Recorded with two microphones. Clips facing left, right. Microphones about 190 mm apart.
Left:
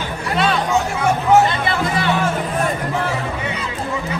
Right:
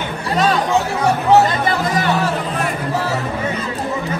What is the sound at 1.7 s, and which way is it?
Music, 40° right (ahead or behind).